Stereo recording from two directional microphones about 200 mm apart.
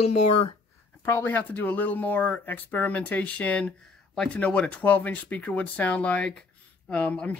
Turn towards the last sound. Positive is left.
turn(degrees=5)  # may be behind; listen again after turning